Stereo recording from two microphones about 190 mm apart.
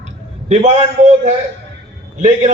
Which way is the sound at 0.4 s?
35° right (ahead or behind).